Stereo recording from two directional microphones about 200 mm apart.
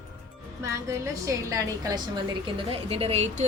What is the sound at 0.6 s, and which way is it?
A woman's voice, 15° right (ahead or behind).